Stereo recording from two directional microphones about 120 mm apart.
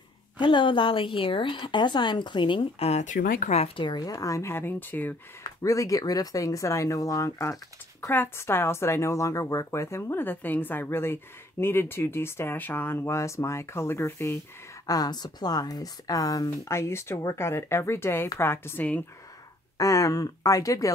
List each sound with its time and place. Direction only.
0.4 s a woman's voice: 40° left (ahead or behind)
3.0 s speech: 90° left
3.6 s speech: 45° left (ahead or behind); by 5.1 s 15° left (ahead or behind)
5.4 s speech: 30° left (ahead or behind)
14.9 s speech: 35° left (ahead or behind); by 19.0 s 15° left (ahead or behind)
19.8 s speech: 25° left (ahead or behind)